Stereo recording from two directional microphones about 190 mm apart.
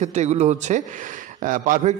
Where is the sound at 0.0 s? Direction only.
40° right (ahead or behind).